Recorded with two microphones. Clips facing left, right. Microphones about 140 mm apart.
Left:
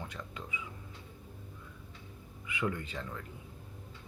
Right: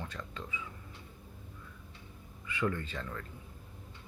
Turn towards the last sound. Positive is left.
turn(degrees=15)  # may be behind; listen again after turning